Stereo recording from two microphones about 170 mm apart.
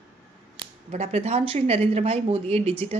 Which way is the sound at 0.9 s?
40° right (ahead or behind).